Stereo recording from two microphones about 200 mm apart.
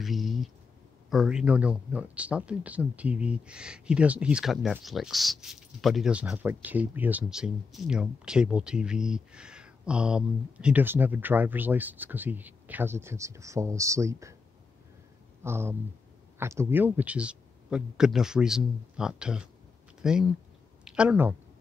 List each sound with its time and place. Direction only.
0.0 s a sound: centre (ahead or behind)
1.1 s speech: 5° right (ahead or behind)
15.4 s speech: 10° right (ahead or behind)